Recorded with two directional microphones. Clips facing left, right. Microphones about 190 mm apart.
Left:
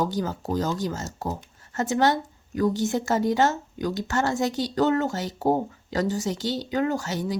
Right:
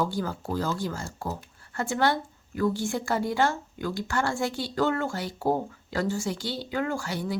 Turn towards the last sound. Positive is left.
turn(degrees=20)  # may be behind; listen again after turning